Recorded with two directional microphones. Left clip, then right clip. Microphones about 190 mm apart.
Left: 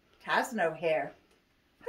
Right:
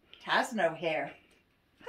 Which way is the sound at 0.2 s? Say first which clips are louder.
Even; 10° left (ahead or behind).